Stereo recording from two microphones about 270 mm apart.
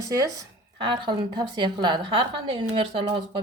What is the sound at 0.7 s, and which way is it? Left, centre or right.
A woman's voice, centre.